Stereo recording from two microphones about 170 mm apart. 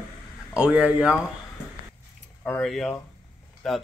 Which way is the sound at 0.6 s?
10° right (ahead or behind).